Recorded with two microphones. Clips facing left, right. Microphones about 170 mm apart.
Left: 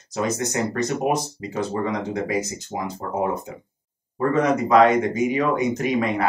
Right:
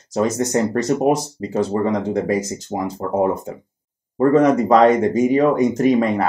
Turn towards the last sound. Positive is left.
turn(degrees=-40)  # may be behind; listen again after turning